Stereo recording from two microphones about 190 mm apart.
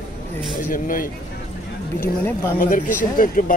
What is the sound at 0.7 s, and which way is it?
Speech, 45° left (ahead or behind).